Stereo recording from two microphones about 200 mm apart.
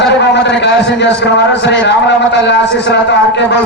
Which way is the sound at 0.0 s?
60° left (ahead or behind).